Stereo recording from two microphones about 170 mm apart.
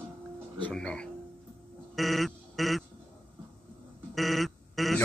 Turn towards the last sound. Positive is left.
turn(degrees=0)  # may be behind; listen again after turning